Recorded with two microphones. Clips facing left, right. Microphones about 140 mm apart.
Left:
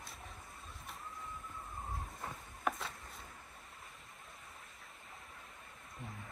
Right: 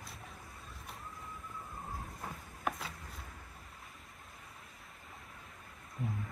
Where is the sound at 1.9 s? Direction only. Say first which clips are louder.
Right 1 dB; centre (ahead or behind).